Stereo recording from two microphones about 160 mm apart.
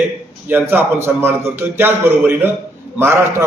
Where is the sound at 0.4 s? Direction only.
10° right (ahead or behind).